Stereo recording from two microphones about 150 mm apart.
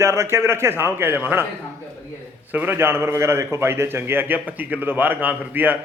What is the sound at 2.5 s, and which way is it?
A man's voice, 10° right (ahead or behind).